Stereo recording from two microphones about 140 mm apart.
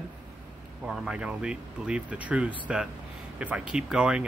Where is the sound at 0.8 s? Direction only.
5° right (ahead or behind).